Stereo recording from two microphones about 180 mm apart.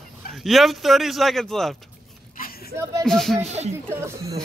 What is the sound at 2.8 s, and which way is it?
Speech, 15° right (ahead or behind).